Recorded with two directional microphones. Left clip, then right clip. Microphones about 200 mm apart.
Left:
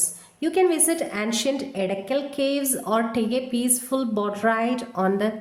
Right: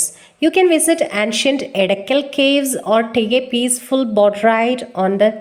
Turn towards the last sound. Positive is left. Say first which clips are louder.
# right 9 dB
turn(degrees=-15)  # may be behind; listen again after turning